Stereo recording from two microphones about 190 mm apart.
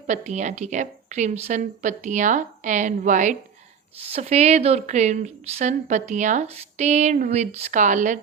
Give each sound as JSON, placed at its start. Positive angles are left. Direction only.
{"t": 0.1, "sound": "a woman's voice", "side_deg": -40}